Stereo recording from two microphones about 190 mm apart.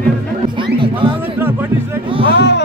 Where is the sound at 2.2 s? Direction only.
65° left (ahead or behind).